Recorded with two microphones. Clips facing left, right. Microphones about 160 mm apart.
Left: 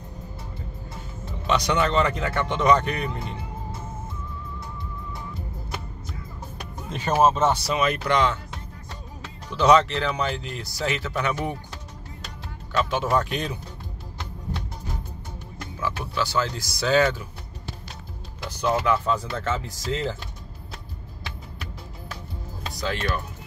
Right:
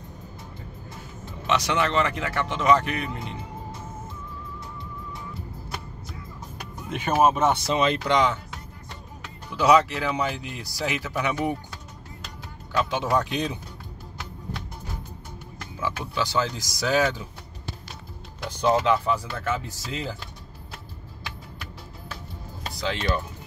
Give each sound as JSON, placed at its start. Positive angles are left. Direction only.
{"t": 1.8, "sound": "speech", "side_deg": -5}
{"t": 6.9, "sound": "speech", "side_deg": -10}
{"t": 7.7, "sound": "speech", "side_deg": -25}
{"t": 9.5, "sound": "speech", "side_deg": -10}
{"t": 12.7, "sound": "speech", "side_deg": -15}
{"t": 15.8, "sound": "speech", "side_deg": -15}
{"t": 18.6, "sound": "speech", "side_deg": -20}
{"t": 19.1, "sound": "speech", "side_deg": -10}
{"t": 22.8, "sound": "speech", "side_deg": -20}